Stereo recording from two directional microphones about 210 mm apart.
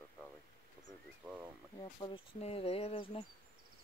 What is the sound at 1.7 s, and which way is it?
Speech, 25° left (ahead or behind).